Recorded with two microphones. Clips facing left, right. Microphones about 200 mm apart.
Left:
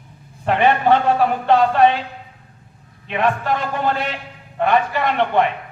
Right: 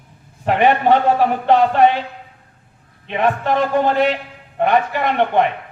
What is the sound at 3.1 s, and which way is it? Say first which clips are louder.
Speech: right 1 dB; 20° right (ahead or behind).